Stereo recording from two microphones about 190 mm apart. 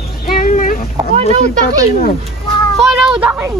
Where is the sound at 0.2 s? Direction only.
45° left (ahead or behind).